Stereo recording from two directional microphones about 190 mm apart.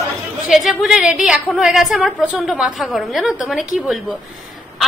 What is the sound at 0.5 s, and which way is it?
A woman's voice, centre (ahead or behind).